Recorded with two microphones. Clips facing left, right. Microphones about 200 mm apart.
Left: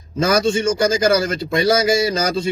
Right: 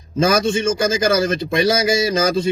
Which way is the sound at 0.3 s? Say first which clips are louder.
Left 1 dB; 20° right (ahead or behind).